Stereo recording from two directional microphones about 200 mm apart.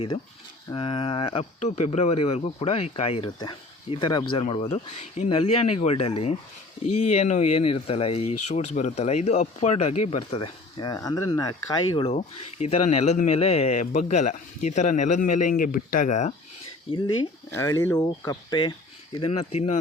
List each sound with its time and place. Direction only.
0.7 s speech: 25° left (ahead or behind)
11.9 s speech: 30° left (ahead or behind)
17.5 s speech: 15° left (ahead or behind); by 19.8 s 35° left (ahead or behind)